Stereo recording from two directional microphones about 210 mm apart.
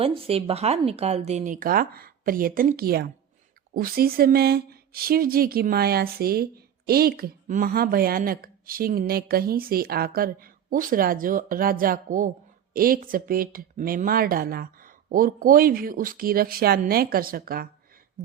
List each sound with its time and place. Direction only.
0.0 s speech: 25° right (ahead or behind); by 17.7 s 45° right (ahead or behind)